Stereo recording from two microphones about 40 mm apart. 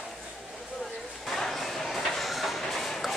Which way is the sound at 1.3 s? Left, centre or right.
Centre.